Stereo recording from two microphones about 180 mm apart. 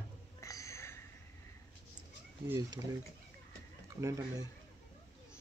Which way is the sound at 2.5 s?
20° right (ahead or behind).